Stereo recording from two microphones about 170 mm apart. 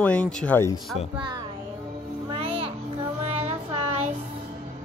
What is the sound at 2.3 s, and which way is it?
Music, 35° right (ahead or behind).